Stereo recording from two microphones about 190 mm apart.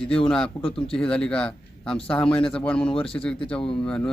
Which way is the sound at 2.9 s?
30° left (ahead or behind).